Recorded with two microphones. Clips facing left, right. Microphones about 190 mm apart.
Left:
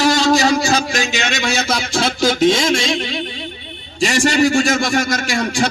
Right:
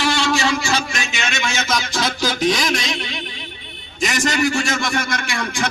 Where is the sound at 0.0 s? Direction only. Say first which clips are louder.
Left 5 dB; 40° left (ahead or behind).